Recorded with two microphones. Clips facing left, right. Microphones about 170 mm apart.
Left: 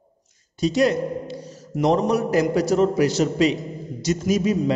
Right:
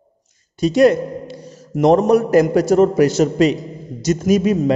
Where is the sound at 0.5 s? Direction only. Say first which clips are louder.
Right 6 dB; 55° right (ahead or behind).